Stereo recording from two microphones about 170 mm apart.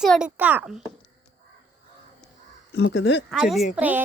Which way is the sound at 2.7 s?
90° left.